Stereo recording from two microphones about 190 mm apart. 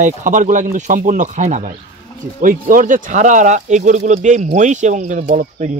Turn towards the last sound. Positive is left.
turn(degrees=-45)  # may be behind; listen again after turning